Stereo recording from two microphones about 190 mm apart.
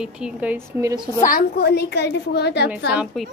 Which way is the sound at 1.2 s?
50° left (ahead or behind).